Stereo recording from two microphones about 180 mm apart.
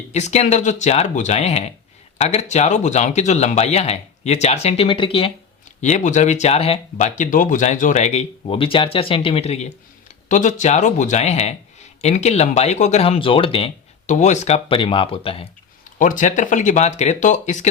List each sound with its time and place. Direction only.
0.1 s speech: 40° left (ahead or behind)
5.8 s speech: 40° left (ahead or behind)
14.1 s speech: 40° left (ahead or behind)
16.0 s speech: 45° left (ahead or behind)